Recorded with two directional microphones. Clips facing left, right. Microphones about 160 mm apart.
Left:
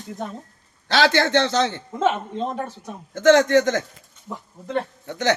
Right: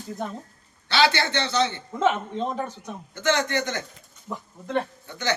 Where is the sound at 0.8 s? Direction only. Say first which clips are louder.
Left 3 dB; 90° left.